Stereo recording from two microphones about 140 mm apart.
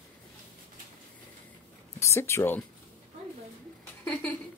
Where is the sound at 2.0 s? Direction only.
20° left (ahead or behind).